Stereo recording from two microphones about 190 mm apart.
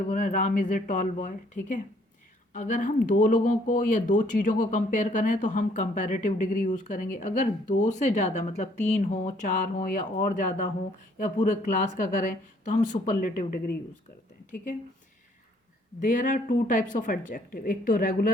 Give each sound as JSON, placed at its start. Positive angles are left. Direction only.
{"t": 0.1, "sound": "a woman's voice", "side_deg": 45}
{"t": 16.0, "sound": "a woman's voice", "side_deg": 45}